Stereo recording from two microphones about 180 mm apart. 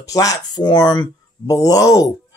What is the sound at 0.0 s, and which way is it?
Speech, 20° left (ahead or behind).